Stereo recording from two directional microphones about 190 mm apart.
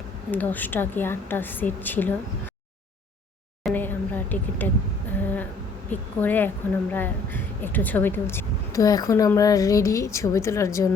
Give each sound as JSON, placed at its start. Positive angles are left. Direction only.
{"t": 0.3, "sound": "a woman's voice", "side_deg": 10}
{"t": 3.7, "sound": "a sound", "side_deg": 10}
{"t": 5.9, "sound": "a woman's voice", "side_deg": 10}